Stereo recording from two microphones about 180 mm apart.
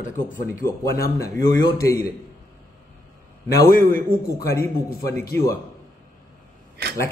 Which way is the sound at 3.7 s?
55° left (ahead or behind).